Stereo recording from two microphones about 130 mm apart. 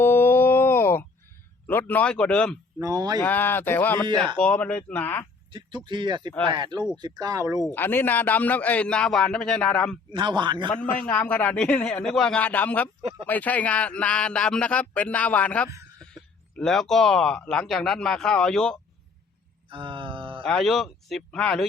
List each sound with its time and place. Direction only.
0.0 s wail: 15° left (ahead or behind)
1.6 s a man's voice: 15° left (ahead or behind)
2.8 s speech: 30° right (ahead or behind)
3.2 s a man's voice: 15° left (ahead or behind)
5.5 s speech: 40° right (ahead or behind)
7.7 s a man's voice: 15° left (ahead or behind)
10.1 s speech: 35° right (ahead or behind)
10.7 s a man's voice: 15° left (ahead or behind)
19.7 s groan: 40° right (ahead or behind)
20.4 s speech: 5° left (ahead or behind)